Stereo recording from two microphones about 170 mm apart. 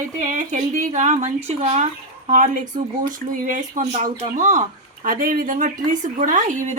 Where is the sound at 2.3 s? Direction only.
50° right (ahead or behind).